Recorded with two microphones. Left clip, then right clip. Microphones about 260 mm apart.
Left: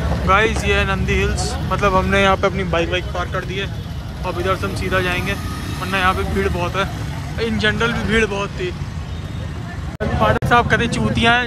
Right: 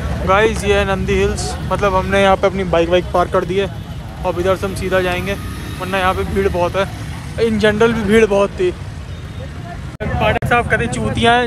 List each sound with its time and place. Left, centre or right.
0.3 s speech: centre
10.2 s speech: centre